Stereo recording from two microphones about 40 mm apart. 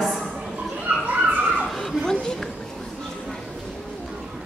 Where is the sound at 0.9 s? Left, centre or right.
Right.